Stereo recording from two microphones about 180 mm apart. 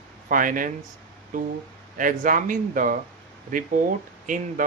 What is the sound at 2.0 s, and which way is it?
Speech, 50° right (ahead or behind).